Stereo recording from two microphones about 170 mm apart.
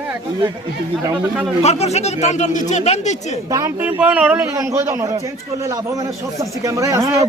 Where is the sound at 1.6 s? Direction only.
40° left (ahead or behind).